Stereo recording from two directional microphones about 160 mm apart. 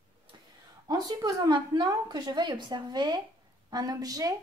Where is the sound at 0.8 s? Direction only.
25° right (ahead or behind).